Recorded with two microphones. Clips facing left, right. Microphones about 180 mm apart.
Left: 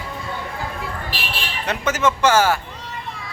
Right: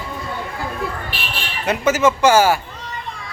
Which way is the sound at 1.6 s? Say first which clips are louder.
Right 5 dB; 10° right (ahead or behind).